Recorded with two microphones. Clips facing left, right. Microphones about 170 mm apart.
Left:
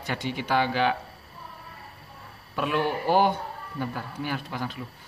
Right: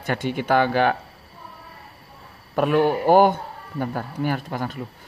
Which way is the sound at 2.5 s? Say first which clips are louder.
Right 8 dB; 50° right (ahead or behind).